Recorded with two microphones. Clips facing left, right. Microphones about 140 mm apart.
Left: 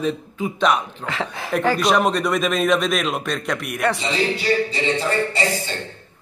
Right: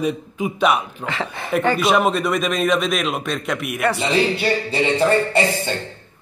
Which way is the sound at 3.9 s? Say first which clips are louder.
Right 3 dB; 55° right (ahead or behind).